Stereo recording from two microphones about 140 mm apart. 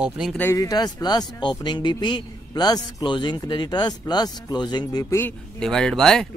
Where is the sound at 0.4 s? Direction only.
20° left (ahead or behind).